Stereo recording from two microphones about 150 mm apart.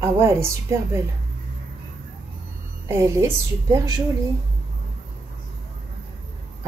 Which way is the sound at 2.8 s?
20° right (ahead or behind).